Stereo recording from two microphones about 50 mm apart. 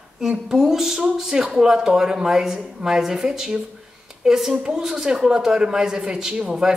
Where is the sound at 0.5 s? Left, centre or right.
Centre.